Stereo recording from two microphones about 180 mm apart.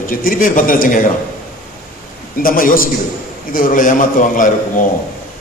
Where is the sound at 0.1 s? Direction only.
50° left (ahead or behind).